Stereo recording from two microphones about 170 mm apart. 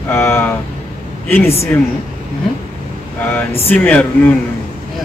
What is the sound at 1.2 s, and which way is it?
Speech, 10° left (ahead or behind).